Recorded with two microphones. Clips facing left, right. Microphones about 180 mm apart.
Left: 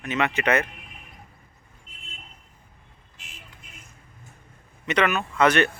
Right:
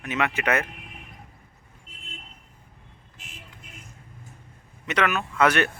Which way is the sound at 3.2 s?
50° right (ahead or behind).